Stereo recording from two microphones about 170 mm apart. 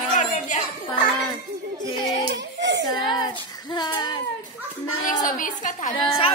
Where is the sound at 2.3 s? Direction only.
90° right.